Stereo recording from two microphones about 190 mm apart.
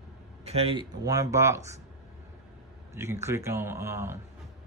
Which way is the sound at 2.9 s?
15° right (ahead or behind).